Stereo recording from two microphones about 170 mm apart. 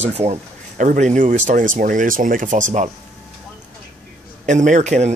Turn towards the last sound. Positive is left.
turn(degrees=-40)  # may be behind; listen again after turning